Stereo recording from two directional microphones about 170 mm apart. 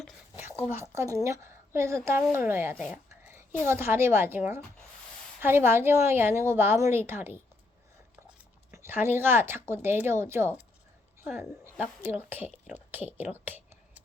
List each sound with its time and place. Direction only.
0.3 s a woman's voice: 15° right (ahead or behind)
2.7 s speech: centre (ahead or behind)
3.2 s a woman's voice: 15° right (ahead or behind)
8.7 s a woman's voice: 15° right (ahead or behind)
13.4 s a sound: 10° right (ahead or behind)